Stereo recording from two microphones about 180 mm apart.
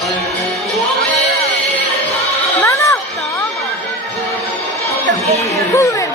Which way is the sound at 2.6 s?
15° left (ahead or behind).